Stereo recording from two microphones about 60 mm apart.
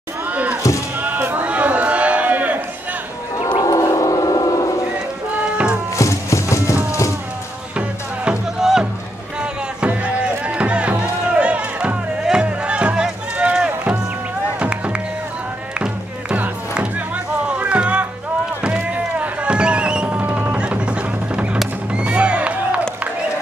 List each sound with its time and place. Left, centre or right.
0.3 s crowd: right
1.0 s a sound: right
3.6 s a sound: left
5.4 s music: centre
5.9 s music: left
8.3 s music: centre
17.5 s music: right